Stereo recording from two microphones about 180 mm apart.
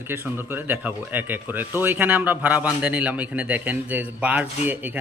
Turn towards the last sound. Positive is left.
turn(degrees=-10)  # may be behind; listen again after turning